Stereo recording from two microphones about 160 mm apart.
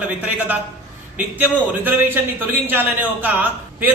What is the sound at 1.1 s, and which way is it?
A man's voice, 10° right (ahead or behind).